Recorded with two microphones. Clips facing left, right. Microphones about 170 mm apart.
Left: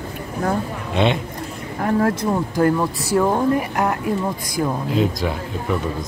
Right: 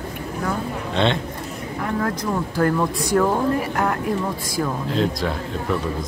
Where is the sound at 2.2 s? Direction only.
20° left (ahead or behind).